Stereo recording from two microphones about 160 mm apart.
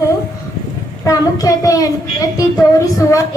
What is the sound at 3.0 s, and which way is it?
Speech, 20° left (ahead or behind).